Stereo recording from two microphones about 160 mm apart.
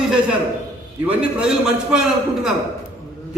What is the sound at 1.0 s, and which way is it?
A man's voice, 5° right (ahead or behind).